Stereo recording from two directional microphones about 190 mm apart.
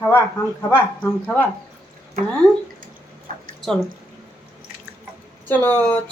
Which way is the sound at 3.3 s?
45° right (ahead or behind).